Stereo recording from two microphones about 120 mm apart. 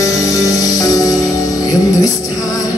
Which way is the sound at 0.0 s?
25° left (ahead or behind).